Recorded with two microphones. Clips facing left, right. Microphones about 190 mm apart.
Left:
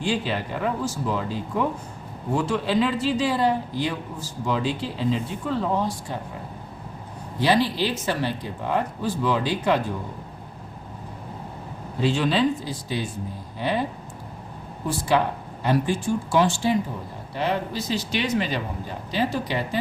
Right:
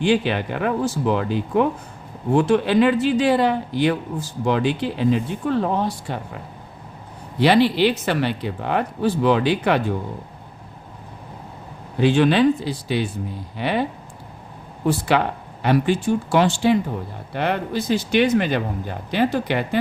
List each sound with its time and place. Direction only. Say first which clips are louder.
0.0 s speech: right 6 dB; 65° right (ahead or behind)
7.3 s speech: right 5 dB; 70° right (ahead or behind)
11.9 s speech: right 6 dB; 65° right (ahead or behind)
14.8 s speech: right 3 dB; 70° right (ahead or behind)